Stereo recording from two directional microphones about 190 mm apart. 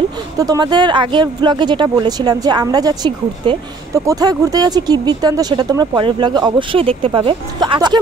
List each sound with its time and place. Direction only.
0.4 s speech: 20° right (ahead or behind)